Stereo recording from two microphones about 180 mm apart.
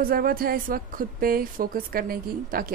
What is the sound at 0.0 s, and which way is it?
A woman's voice, 55° right (ahead or behind).